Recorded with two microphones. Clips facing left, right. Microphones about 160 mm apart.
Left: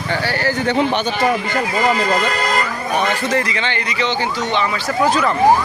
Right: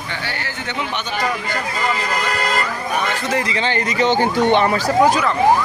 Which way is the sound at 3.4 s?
30° right (ahead or behind).